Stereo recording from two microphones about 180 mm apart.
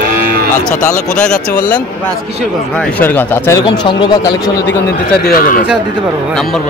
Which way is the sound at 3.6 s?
25° left (ahead or behind).